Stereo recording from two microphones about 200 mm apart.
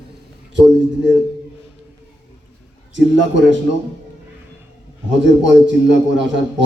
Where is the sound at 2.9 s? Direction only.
65° right (ahead or behind).